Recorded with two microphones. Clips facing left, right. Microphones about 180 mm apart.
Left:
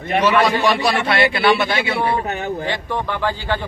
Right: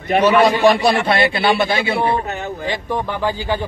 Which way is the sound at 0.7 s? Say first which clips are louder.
Right 2 dB; 30° right (ahead or behind).